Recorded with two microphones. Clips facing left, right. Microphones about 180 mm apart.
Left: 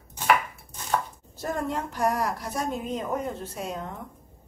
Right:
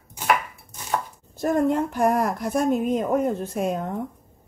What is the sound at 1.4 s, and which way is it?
A woman's voice, 55° right (ahead or behind).